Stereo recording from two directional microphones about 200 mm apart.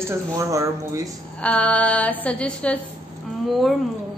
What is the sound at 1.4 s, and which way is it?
A woman's voice, 5° left (ahead or behind).